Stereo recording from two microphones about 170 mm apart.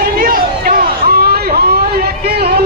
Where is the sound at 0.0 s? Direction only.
60° right (ahead or behind).